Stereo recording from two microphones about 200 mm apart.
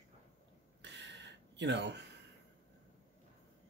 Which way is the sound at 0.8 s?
60° right (ahead or behind).